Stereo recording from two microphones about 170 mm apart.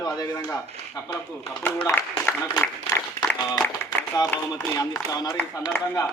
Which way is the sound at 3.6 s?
10° left (ahead or behind).